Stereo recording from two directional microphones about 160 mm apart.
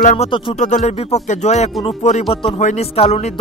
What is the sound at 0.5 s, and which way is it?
Speech, 50° left (ahead or behind).